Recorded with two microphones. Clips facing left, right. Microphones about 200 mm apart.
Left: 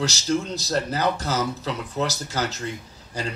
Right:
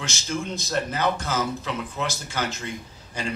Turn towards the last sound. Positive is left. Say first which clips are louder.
# left 1 dB
turn(degrees=40)  # may be behind; listen again after turning